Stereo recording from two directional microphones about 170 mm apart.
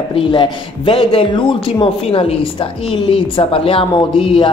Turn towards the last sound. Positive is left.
turn(degrees=30)  # may be behind; listen again after turning